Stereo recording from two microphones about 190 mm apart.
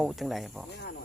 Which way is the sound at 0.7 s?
60° left (ahead or behind).